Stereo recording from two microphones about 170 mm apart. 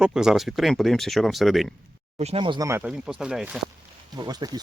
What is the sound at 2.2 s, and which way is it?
Speech, 35° right (ahead or behind).